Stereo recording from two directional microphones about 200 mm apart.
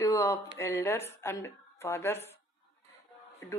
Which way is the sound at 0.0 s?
15° left (ahead or behind).